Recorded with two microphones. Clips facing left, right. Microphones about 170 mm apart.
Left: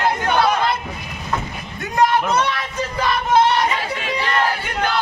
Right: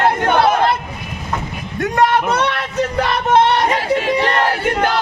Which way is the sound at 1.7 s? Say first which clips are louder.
Right 2 dB; 65° right (ahead or behind).